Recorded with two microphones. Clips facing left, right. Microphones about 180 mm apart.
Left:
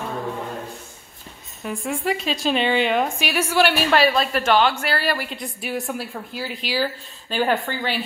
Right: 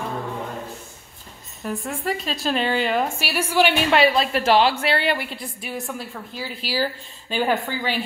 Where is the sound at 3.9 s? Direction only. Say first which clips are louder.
Even; 25° right (ahead or behind).